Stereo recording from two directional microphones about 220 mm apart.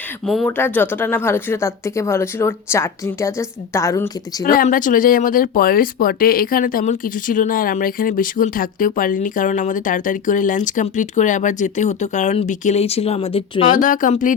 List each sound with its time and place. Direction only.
0.3 s speech: 5° left (ahead or behind)
4.4 s speech: 40° left (ahead or behind)
13.7 s speech: 35° left (ahead or behind)